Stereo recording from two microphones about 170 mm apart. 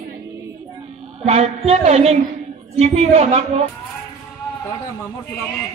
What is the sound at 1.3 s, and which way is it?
Speech, 40° right (ahead or behind).